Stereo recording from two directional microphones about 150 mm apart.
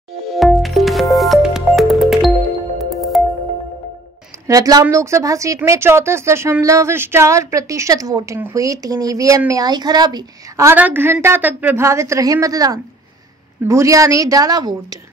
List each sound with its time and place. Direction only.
0.3 s music: centre (ahead or behind)
4.5 s speech: 25° right (ahead or behind)
10.7 s a woman's voice: 15° right (ahead or behind)